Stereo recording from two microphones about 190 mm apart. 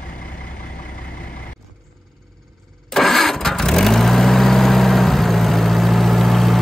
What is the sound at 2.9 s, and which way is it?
Vehicle, centre (ahead or behind).